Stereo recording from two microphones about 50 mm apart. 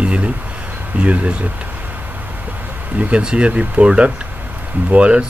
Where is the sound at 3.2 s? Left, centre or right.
Centre.